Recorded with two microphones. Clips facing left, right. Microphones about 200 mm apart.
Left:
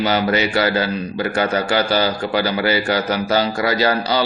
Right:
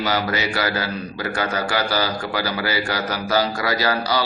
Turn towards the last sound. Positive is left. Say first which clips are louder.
# left 3 dB
turn(degrees=25)  # may be behind; listen again after turning